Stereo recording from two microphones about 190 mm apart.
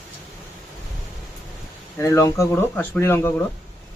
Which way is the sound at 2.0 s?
15° left (ahead or behind).